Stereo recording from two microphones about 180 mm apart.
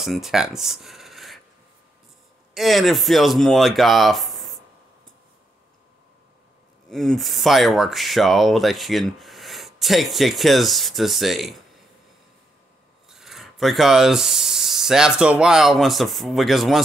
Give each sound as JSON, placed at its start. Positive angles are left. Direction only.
{"t": 0.0, "sound": "speech", "side_deg": 0}
{"t": 2.5, "sound": "speech", "side_deg": 0}
{"t": 6.9, "sound": "speech", "side_deg": 0}
{"t": 13.1, "sound": "speech", "side_deg": 0}